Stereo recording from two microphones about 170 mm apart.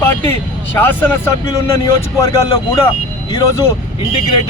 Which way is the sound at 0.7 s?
10° left (ahead or behind).